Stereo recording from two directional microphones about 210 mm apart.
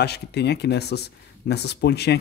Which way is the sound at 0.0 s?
50° left (ahead or behind).